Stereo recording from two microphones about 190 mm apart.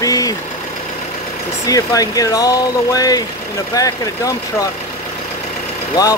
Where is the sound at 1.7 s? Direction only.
20° left (ahead or behind).